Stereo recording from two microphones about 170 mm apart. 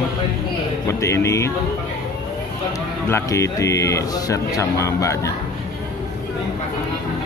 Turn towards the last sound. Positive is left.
turn(degrees=15)  # may be behind; listen again after turning